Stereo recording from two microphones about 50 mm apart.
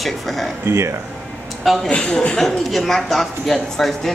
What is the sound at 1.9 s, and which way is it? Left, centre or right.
Speech, left.